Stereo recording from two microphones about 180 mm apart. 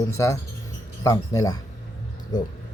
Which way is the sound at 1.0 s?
15° left (ahead or behind).